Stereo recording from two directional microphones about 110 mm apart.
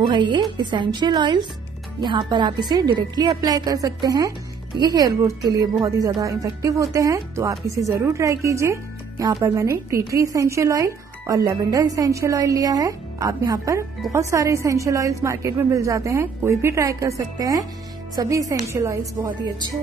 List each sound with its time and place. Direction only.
0.0 s a woman's voice: 45° right (ahead or behind); by 19.3 s 25° right (ahead or behind)